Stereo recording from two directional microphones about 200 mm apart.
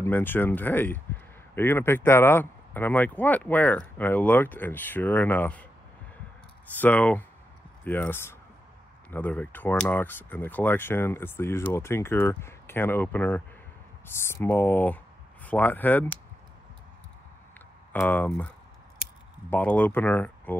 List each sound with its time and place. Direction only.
0.0 s speech: 10° left (ahead or behind)
6.8 s speech: 10° left (ahead or behind)
18.0 s speech: 10° left (ahead or behind)
19.5 s speech: 10° left (ahead or behind)